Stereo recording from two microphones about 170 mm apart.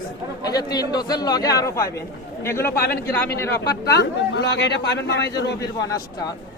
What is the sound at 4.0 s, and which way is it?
A man's voice, 90° left.